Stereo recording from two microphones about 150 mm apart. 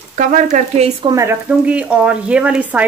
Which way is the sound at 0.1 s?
60° right (ahead or behind).